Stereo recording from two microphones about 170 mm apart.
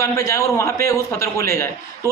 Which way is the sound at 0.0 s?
20° left (ahead or behind).